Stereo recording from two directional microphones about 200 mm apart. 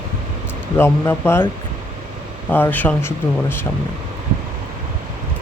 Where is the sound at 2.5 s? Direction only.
10° left (ahead or behind).